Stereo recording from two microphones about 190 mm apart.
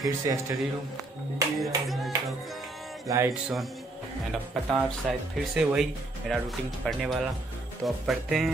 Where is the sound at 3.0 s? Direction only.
15° right (ahead or behind).